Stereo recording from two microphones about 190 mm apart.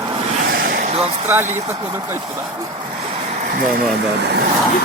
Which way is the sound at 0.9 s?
30° right (ahead or behind).